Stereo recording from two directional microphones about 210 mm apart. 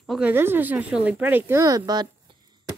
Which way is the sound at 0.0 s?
5° right (ahead or behind).